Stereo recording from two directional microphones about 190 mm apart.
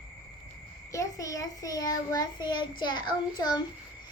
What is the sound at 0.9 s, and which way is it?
A child's voice, 15° left (ahead or behind).